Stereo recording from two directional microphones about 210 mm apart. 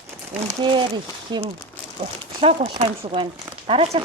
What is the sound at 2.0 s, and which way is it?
Speech, 30° right (ahead or behind).